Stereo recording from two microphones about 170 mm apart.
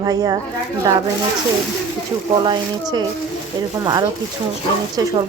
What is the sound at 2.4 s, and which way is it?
Speech, 25° right (ahead or behind).